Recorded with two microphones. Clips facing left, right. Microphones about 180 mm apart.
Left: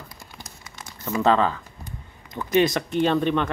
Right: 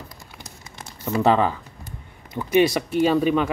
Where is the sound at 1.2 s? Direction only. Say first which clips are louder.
Right 1 dB; 15° right (ahead or behind).